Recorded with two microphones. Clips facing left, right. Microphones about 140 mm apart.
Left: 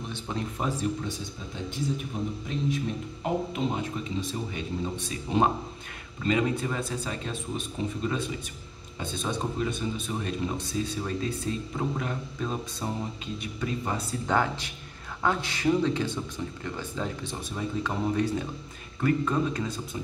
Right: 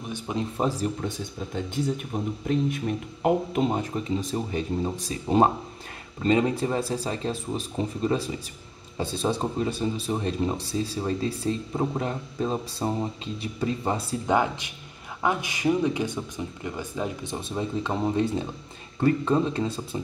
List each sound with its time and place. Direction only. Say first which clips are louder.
0.1 s speech: right 5 dB; 15° right (ahead or behind)
0.6 s speech: right 5 dB; 35° right (ahead or behind)
2.4 s speech: right 6 dB; 55° right (ahead or behind); by 14.0 s 30° right (ahead or behind)
14.2 s speech: right 3 dB; 15° right (ahead or behind)